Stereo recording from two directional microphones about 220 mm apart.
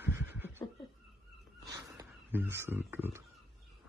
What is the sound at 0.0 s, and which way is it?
Laughter, 10° right (ahead or behind).